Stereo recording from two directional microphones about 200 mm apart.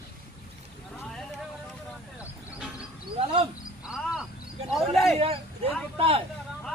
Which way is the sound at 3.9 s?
5° right (ahead or behind).